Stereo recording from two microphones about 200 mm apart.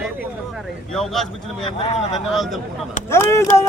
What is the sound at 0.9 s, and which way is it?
Speech, centre (ahead or behind).